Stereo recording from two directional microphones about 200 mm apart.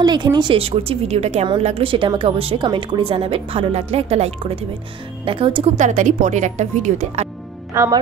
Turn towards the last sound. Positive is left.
turn(degrees=-15)  # may be behind; listen again after turning